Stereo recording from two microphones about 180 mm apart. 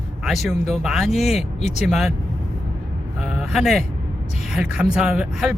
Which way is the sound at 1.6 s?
40° left (ahead or behind).